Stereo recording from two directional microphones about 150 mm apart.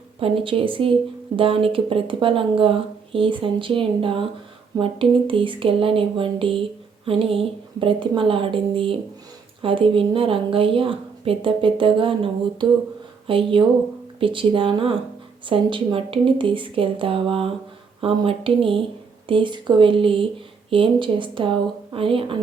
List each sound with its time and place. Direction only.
0.2 s speech: 40° right (ahead or behind)